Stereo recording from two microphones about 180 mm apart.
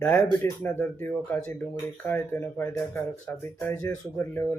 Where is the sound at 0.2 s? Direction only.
10° left (ahead or behind).